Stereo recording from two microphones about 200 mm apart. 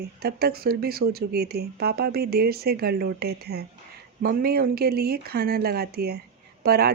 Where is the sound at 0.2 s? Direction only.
50° right (ahead or behind).